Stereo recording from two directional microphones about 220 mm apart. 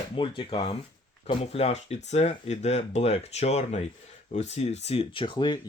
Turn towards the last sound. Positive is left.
turn(degrees=20)  # may be behind; listen again after turning